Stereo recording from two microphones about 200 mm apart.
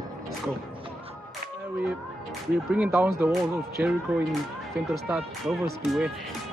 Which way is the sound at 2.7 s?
10° right (ahead or behind).